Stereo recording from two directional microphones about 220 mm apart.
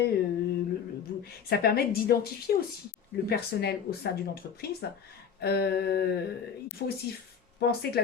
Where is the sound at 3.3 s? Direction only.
45° left (ahead or behind).